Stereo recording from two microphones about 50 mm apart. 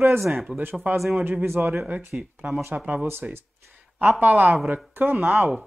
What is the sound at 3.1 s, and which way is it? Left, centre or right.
A man's voice, right.